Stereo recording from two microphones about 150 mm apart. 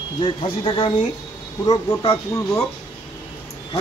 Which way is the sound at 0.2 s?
35° left (ahead or behind).